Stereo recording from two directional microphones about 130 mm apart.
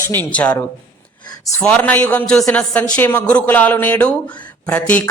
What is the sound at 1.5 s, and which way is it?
A man's voice, 10° left (ahead or behind).